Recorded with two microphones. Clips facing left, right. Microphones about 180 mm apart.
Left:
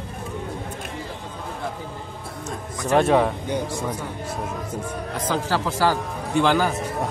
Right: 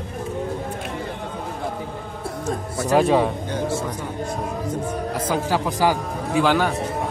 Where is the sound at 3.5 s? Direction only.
15° left (ahead or behind).